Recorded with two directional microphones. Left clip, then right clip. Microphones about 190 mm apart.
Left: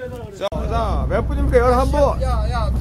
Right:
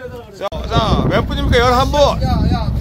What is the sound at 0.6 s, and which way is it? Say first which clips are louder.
Speech: right 6 dB; 25° right (ahead or behind).